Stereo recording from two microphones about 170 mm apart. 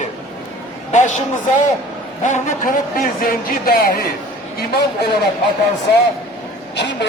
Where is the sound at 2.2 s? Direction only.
55° left (ahead or behind).